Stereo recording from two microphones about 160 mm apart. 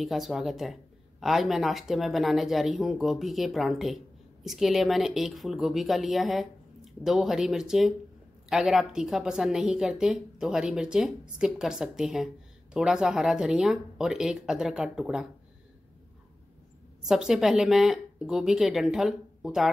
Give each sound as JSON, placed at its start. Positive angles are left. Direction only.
{"t": 0.0, "sound": "speech", "side_deg": 0}
{"t": 17.0, "sound": "speech", "side_deg": -5}